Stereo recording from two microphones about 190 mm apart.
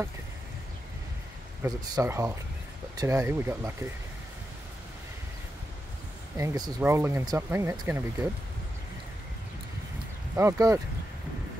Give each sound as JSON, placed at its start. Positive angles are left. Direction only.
{"t": 1.6, "sound": "speech", "side_deg": -15}
{"t": 6.3, "sound": "speech", "side_deg": -15}
{"t": 10.3, "sound": "speech", "side_deg": -15}